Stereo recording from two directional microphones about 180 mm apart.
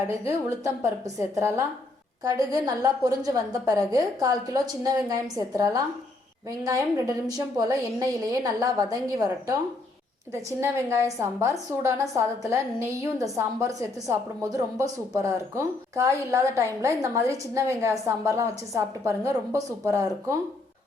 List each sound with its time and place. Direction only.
0.3 s a woman's voice: 15° right (ahead or behind)
10.6 s a woman's voice: 15° right (ahead or behind)